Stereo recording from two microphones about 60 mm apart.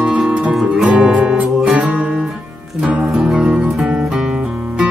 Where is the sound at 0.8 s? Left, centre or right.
Centre.